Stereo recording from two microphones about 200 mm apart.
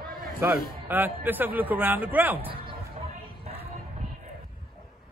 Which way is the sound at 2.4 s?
25° right (ahead or behind).